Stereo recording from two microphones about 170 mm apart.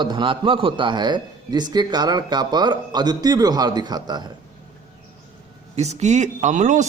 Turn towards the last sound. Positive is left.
turn(degrees=-45)  # may be behind; listen again after turning